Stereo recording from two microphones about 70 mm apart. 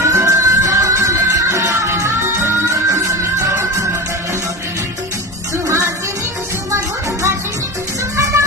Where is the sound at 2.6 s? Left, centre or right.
Right.